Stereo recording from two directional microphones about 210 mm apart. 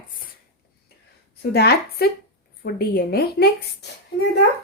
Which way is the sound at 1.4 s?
50° left (ahead or behind).